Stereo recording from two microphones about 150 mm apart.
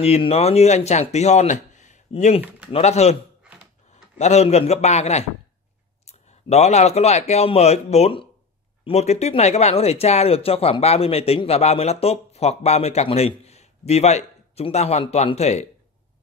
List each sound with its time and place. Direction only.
0.0 s speech: 45° left (ahead or behind)
4.2 s speech: 50° left (ahead or behind)